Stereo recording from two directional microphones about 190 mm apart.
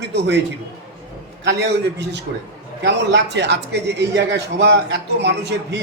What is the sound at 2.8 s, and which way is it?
Speech, 65° right (ahead or behind).